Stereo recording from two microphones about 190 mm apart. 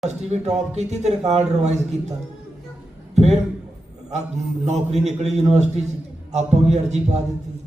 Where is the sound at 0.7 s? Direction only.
35° right (ahead or behind).